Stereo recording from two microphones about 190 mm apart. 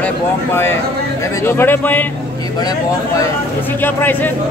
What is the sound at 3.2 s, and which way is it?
Speech, 10° left (ahead or behind).